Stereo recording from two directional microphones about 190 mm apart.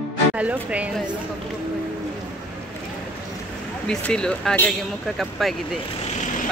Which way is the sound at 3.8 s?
5° left (ahead or behind).